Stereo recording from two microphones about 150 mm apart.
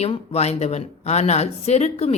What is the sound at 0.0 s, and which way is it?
Speech, 45° left (ahead or behind).